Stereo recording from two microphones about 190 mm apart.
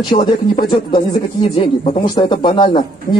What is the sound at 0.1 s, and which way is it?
Speech, 25° left (ahead or behind).